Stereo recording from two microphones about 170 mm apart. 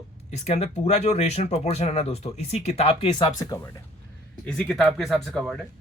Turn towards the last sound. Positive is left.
turn(degrees=0)  # may be behind; listen again after turning